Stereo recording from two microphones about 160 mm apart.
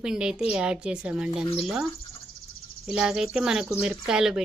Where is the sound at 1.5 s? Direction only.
35° left (ahead or behind).